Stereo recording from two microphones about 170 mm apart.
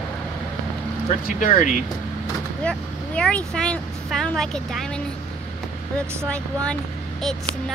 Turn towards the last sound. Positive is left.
turn(degrees=5)  # may be behind; listen again after turning